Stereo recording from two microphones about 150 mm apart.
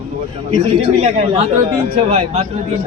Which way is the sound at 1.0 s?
45° right (ahead or behind).